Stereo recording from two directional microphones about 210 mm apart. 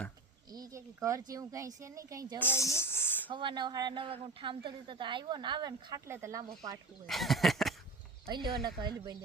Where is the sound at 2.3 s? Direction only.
10° left (ahead or behind).